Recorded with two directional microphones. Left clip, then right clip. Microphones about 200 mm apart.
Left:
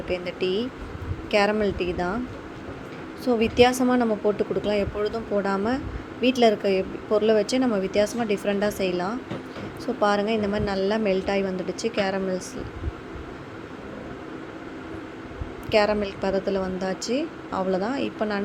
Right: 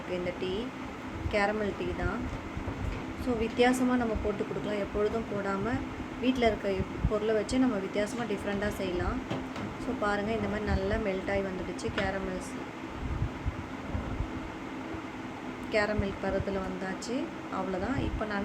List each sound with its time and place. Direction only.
0.1 s speech: 35° left (ahead or behind)
3.2 s speech: 35° left (ahead or behind)
15.7 s speech: 35° left (ahead or behind)